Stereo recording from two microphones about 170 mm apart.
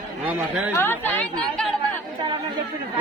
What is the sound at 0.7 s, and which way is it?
Speech, 10° left (ahead or behind).